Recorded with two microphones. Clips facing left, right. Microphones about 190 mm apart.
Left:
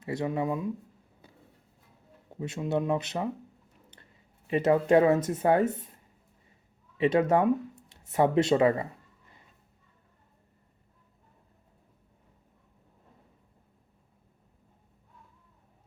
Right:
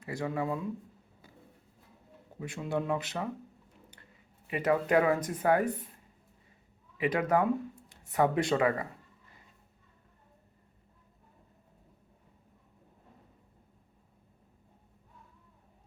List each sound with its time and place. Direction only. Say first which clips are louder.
0.0 s speech: left 4 dB; 20° left (ahead or behind)
2.4 s speech: left 4 dB; 20° left (ahead or behind)
4.4 s speech: left 5 dB; 25° left (ahead or behind)
7.0 s speech: left 5 dB; 25° left (ahead or behind)